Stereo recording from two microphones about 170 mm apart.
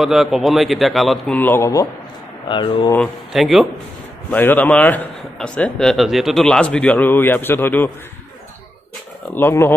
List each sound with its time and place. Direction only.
0.0 s a man's voice: centre (ahead or behind); by 2.9 s 25° left (ahead or behind)
3.3 s a man's voice: centre (ahead or behind)
4.3 s a man's voice: 10° left (ahead or behind)
9.3 s a man's voice: 15° left (ahead or behind)